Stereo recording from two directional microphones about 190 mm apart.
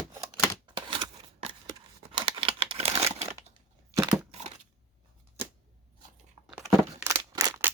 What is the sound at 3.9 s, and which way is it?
Crushing, 15° right (ahead or behind).